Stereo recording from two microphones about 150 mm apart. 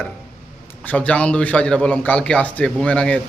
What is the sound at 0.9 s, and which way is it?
Speech, 10° left (ahead or behind).